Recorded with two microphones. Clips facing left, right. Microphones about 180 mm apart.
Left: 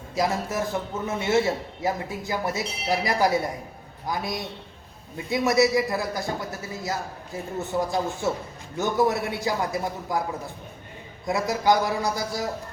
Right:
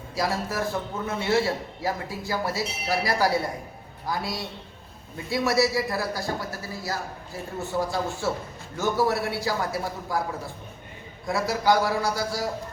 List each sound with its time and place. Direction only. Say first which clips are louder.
0.2 s a man's voice: left 2 dB; 20° left (ahead or behind)
11.3 s a man's voice: left 1 dB; 20° left (ahead or behind)